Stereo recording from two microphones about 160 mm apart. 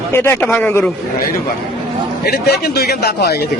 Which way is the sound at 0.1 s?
15° left (ahead or behind).